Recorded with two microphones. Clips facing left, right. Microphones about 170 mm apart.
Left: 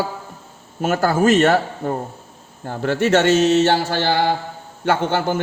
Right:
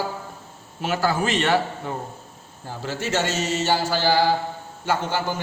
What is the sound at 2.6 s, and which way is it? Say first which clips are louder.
Mantra: left 10 dB; 60° left (ahead or behind).